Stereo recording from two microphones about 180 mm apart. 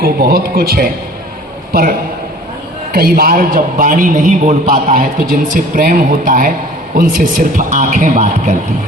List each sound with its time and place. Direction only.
0.0 s a man's voice: 55° right (ahead or behind)